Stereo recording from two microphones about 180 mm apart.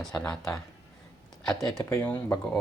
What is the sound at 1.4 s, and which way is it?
Speech, 5° left (ahead or behind).